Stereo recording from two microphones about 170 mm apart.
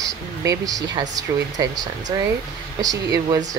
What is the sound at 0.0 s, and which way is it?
Speech, 20° right (ahead or behind).